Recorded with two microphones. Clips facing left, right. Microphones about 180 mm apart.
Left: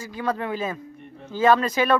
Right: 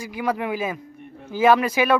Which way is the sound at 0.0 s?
10° right (ahead or behind).